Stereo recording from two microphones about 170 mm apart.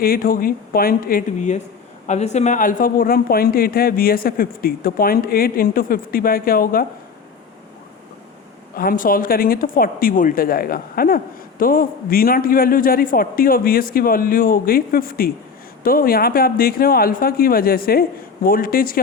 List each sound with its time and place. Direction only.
0.0 s speech: 60° left (ahead or behind)
8.7 s speech: 55° left (ahead or behind)